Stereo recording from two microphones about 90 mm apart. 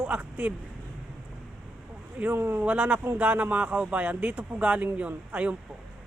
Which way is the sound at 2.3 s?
25° right (ahead or behind).